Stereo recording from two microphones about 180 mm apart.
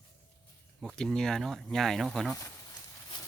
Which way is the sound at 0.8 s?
Centre (ahead or behind).